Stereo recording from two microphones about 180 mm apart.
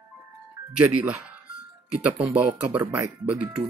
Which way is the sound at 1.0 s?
10° right (ahead or behind).